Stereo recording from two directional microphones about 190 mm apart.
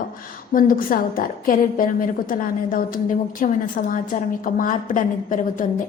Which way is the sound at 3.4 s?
45° left (ahead or behind).